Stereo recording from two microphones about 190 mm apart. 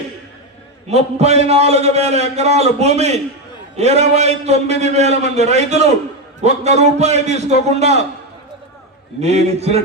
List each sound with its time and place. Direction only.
0.9 s a man's voice: 35° right (ahead or behind)
9.2 s a man's voice: 35° right (ahead or behind)